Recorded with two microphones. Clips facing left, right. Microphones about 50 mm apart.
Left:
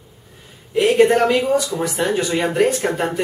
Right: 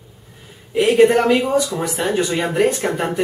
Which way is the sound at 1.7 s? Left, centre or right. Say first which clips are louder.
Even; centre.